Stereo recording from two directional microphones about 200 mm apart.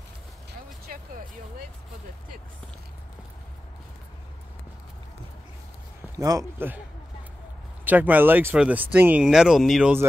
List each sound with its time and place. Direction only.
0.5 s vehicle: 45° right (ahead or behind)
6.1 s speech: 15° right (ahead or behind)
7.8 s speech: 10° right (ahead or behind)